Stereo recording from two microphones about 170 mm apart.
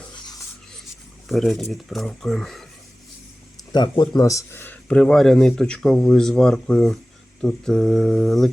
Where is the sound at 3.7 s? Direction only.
25° left (ahead or behind).